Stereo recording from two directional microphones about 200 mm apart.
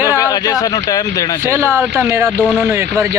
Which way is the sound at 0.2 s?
20° left (ahead or behind).